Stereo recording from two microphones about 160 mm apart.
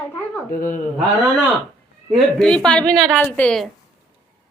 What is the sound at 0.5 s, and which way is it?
Speech, 55° left (ahead or behind).